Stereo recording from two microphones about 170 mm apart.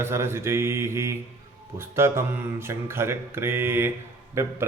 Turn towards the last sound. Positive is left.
turn(degrees=-15)  # may be behind; listen again after turning